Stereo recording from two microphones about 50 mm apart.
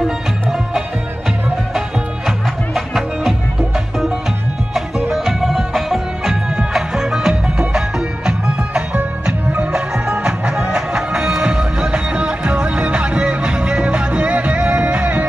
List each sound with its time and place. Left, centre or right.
0.0 s music: centre
2.2 s music: centre
5.1 s music: centre
9.5 s music: right